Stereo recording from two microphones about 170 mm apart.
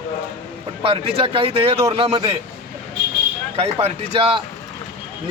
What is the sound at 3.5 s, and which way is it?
Speech, 35° right (ahead or behind).